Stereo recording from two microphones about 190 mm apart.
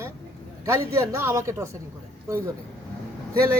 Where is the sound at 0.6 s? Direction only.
15° right (ahead or behind).